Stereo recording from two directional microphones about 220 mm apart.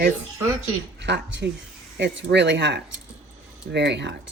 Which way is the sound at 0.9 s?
50° right (ahead or behind).